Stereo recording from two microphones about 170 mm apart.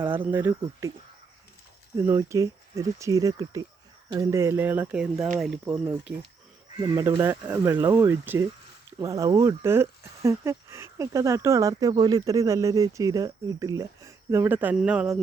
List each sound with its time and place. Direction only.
0.0 s speech: 10° right (ahead or behind)
2.1 s speech: 20° right (ahead or behind)
6.7 s speech: 20° right (ahead or behind)